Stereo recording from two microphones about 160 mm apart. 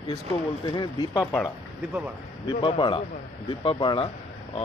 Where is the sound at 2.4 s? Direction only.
30° left (ahead or behind).